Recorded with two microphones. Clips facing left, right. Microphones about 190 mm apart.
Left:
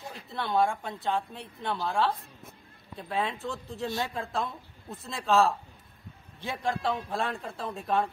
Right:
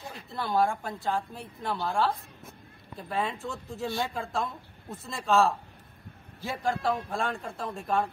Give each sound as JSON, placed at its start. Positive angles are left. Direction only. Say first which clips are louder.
{"t": 0.1, "sound": "a woman's voice", "louder": "even", "side_deg": 0}